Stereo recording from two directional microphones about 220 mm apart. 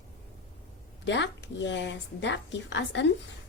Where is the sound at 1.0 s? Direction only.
55° left (ahead or behind).